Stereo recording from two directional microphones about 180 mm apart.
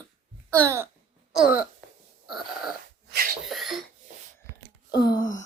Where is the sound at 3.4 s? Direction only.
Centre (ahead or behind).